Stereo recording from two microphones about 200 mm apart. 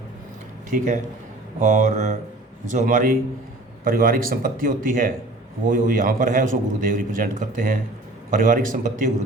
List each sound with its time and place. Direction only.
0.7 s a man's voice: 40° right (ahead or behind)